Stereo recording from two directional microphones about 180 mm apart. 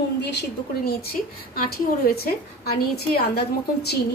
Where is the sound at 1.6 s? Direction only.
55° left (ahead or behind).